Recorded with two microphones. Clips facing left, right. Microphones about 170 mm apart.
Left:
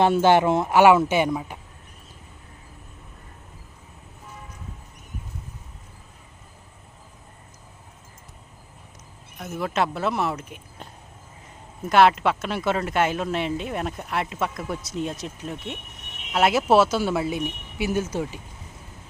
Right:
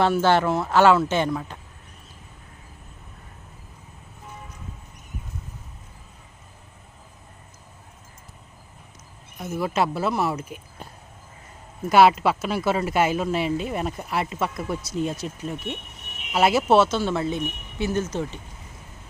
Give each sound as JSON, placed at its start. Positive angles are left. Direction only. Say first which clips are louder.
{"t": 0.0, "sound": "speech", "louder": "left 2 dB", "side_deg": 15}
{"t": 9.4, "sound": "speech", "louder": "right 1 dB", "side_deg": -5}
{"t": 11.9, "sound": "speech", "louder": "right 1 dB", "side_deg": -5}